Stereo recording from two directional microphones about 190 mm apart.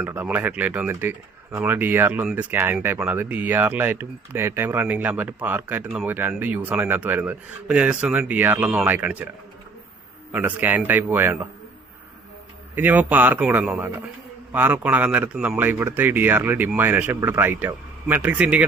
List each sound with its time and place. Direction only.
0.0 s speech: 10° right (ahead or behind)
10.3 s speech: 10° right (ahead or behind)
12.7 s speech: 10° right (ahead or behind)